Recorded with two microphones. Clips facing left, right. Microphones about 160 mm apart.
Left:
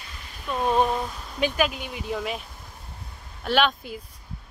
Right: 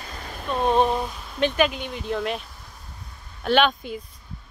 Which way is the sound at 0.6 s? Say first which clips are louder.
Right 2 dB; 20° right (ahead or behind).